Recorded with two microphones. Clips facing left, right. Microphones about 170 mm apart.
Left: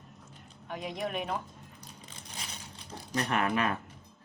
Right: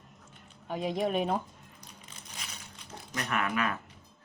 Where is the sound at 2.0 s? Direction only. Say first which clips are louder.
Left 2 dB; 35° left (ahead or behind).